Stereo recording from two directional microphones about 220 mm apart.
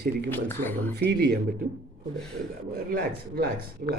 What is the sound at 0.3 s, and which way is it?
Speech, 10° left (ahead or behind).